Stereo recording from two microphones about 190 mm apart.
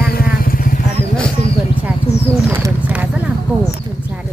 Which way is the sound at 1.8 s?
10° right (ahead or behind).